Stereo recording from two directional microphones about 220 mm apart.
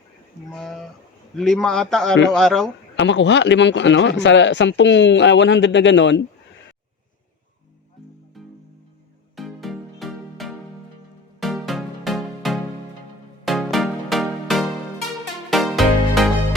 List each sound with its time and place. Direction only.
0.5 s a man's voice: centre (ahead or behind)
2.9 s a man's voice: 55° left (ahead or behind)
9.3 s music: centre (ahead or behind)